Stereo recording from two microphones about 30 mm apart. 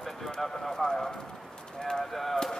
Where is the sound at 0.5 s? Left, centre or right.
Centre.